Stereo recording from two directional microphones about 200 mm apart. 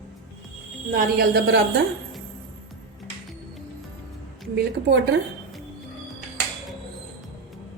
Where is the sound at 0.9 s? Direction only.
55° right (ahead or behind).